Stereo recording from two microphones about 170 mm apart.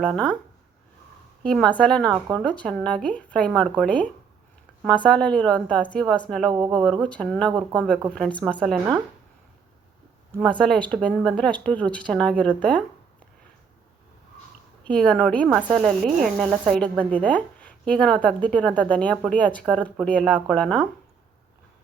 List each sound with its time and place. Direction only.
0.0 s speech: 5° left (ahead or behind)
1.5 s speech: 5° left (ahead or behind)
2.1 s speech: 20° right (ahead or behind)
2.4 s speech: 5° left (ahead or behind)
10.4 s speech: 5° left (ahead or behind)
14.8 s speech: 5° left (ahead or behind)
17.0 s speech: 10° left (ahead or behind)